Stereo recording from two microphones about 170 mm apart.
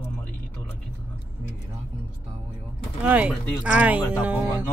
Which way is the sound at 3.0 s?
10° right (ahead or behind).